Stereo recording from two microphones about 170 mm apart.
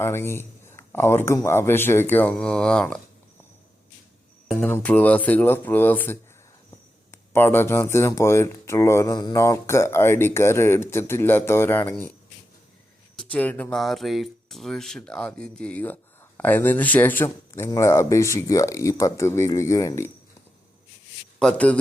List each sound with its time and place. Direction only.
0.0 s speech: 15° left (ahead or behind)
4.7 s speech: 10° left (ahead or behind)
13.1 s speech: 10° left (ahead or behind)
21.3 s speech: 5° left (ahead or behind)